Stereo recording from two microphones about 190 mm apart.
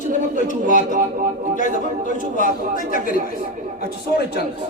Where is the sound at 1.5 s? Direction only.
45° left (ahead or behind).